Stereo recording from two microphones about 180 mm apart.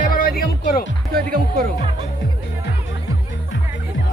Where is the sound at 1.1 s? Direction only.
55° right (ahead or behind).